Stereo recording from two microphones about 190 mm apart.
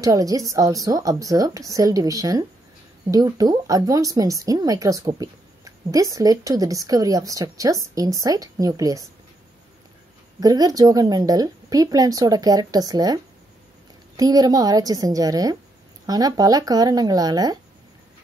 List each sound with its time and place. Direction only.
0.0 s a woman's voice: 20° right (ahead or behind)
10.4 s a woman's voice: 20° right (ahead or behind)